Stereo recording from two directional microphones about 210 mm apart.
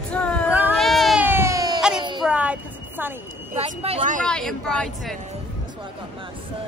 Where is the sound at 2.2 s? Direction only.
5° right (ahead or behind).